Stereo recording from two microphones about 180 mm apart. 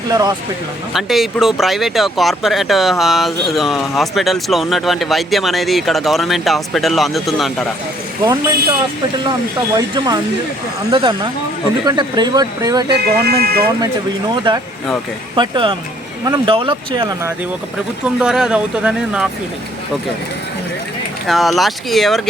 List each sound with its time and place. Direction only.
0.1 s speech: 25° right (ahead or behind)
0.9 s speech: centre (ahead or behind)
8.2 s speech: 20° right (ahead or behind)
13.2 s speech: 60° right (ahead or behind)
15.4 s speech: 25° right (ahead or behind)
18.0 s speech: 5° right (ahead or behind)
21.2 s speech: centre (ahead or behind)